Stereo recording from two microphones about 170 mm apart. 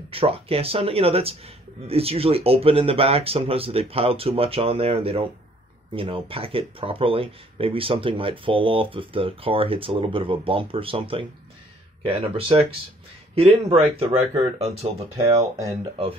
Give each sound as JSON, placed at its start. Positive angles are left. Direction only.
{"t": 0.1, "sound": "speech", "side_deg": -35}
{"t": 15.1, "sound": "speech", "side_deg": -20}